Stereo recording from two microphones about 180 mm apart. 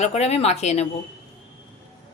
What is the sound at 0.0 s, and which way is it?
Speech, 35° left (ahead or behind).